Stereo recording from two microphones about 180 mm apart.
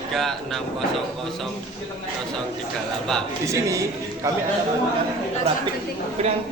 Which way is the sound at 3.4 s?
15° right (ahead or behind).